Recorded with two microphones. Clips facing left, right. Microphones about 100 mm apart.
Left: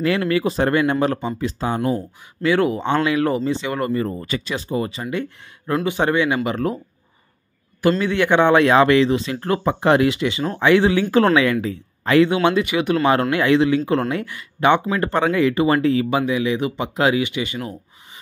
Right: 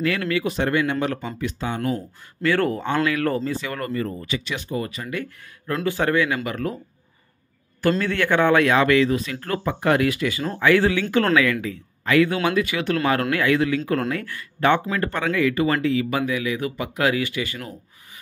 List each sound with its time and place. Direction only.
0.3 s speech: 35° left (ahead or behind)
2.0 s speech: 15° left (ahead or behind)
8.0 s speech: 15° left (ahead or behind)
11.0 s speech: 35° left (ahead or behind); by 13.1 s 15° left (ahead or behind)
13.1 s speech: 25° left (ahead or behind)
16.1 s speech: 20° left (ahead or behind)